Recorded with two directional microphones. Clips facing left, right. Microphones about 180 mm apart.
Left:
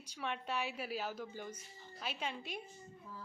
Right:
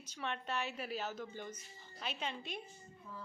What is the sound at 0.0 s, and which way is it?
A woman's voice, 10° left (ahead or behind).